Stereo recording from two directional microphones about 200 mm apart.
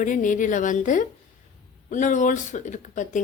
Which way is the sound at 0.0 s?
40° left (ahead or behind).